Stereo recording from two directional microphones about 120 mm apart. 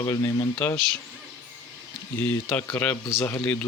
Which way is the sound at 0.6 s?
15° left (ahead or behind).